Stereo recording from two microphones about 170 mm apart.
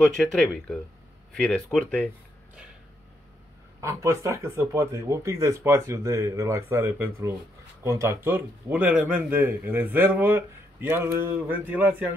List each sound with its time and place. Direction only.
0.0 s speech: centre (ahead or behind)
3.8 s speech: 15° right (ahead or behind)